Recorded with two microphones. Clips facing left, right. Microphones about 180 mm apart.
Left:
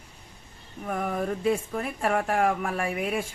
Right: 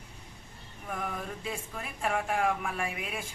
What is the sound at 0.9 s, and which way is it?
Speech, 50° left (ahead or behind).